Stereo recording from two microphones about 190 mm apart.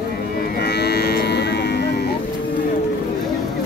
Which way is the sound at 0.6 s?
60° left (ahead or behind).